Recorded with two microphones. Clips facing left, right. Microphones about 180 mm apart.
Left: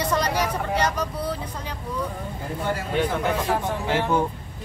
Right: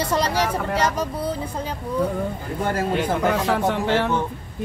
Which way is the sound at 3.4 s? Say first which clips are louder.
Right 4 dB; 75° right (ahead or behind).